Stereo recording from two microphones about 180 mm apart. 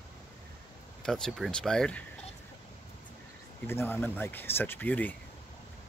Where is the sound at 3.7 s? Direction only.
10° left (ahead or behind).